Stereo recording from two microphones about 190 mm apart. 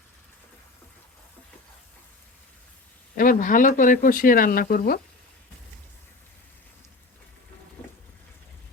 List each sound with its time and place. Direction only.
3.2 s speech: 45° left (ahead or behind)